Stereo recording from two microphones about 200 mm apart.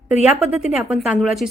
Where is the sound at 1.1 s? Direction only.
Centre (ahead or behind).